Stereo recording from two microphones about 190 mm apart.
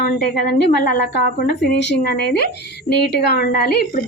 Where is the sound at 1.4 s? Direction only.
55° left (ahead or behind).